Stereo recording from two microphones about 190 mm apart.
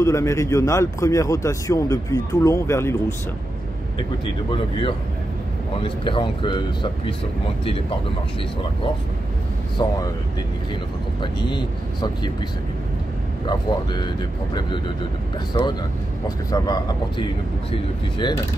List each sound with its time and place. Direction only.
0.0 s speech: 15° left (ahead or behind)
5.8 s speech: 25° left (ahead or behind)
9.8 s speech: 25° left (ahead or behind)
11.1 s speech: 25° left (ahead or behind)
13.5 s speech: 20° left (ahead or behind)